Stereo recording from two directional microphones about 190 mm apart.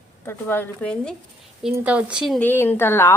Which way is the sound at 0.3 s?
10° left (ahead or behind).